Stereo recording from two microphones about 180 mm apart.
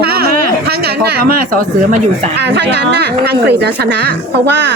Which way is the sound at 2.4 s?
70° right (ahead or behind).